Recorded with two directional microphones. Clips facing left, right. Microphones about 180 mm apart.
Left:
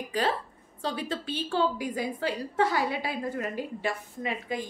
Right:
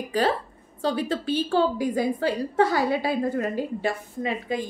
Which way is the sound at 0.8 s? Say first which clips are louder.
Right 7 dB; 40° right (ahead or behind).